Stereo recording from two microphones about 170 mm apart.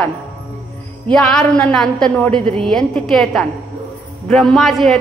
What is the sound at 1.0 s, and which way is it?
A woman's voice, 5° left (ahead or behind).